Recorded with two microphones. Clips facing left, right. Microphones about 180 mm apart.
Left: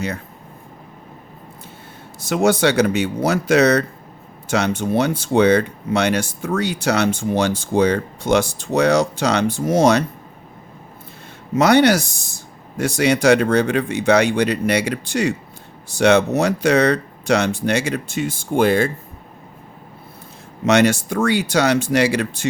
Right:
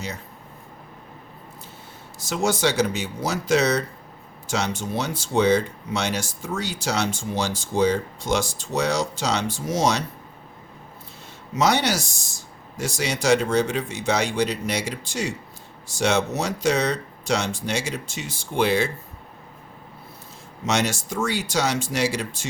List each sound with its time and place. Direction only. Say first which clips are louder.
2.2 s speech: left 6 dB; 60° left (ahead or behind)
11.5 s speech: left 8 dB; 60° left (ahead or behind)
20.7 s speech: left 9 dB; 60° left (ahead or behind)